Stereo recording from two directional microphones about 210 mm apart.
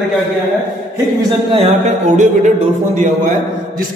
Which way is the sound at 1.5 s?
35° right (ahead or behind).